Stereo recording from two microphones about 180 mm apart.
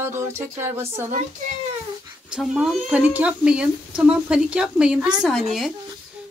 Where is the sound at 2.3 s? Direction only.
5° right (ahead or behind).